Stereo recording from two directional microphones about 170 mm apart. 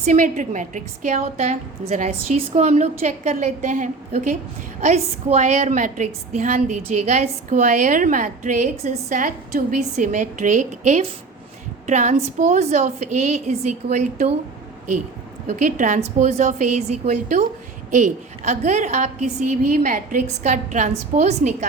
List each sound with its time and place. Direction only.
0.0 s a woman's voice: 45° right (ahead or behind)
15.4 s a woman's voice: 50° right (ahead or behind)